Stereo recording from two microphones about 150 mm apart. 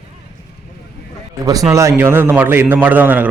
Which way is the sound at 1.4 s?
25° right (ahead or behind).